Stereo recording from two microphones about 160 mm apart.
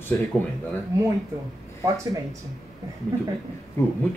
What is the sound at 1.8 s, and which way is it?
Speech, 20° right (ahead or behind).